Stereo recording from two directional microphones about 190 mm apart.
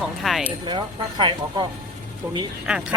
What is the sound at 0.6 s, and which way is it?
Speech, 25° right (ahead or behind).